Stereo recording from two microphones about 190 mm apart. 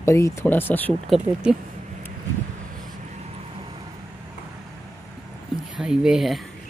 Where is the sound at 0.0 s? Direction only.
15° left (ahead or behind).